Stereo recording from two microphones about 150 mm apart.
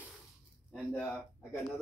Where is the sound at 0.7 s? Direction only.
10° left (ahead or behind).